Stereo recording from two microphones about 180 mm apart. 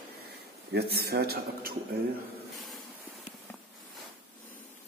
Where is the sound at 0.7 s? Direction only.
60° right (ahead or behind).